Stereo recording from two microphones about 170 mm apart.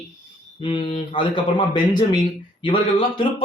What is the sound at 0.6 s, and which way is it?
Speech, 30° left (ahead or behind).